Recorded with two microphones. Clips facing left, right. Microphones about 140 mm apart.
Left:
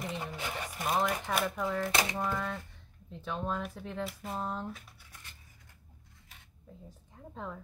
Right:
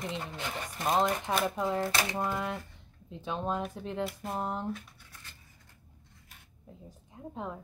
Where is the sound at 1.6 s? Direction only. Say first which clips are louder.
Right 1 dB; 20° right (ahead or behind).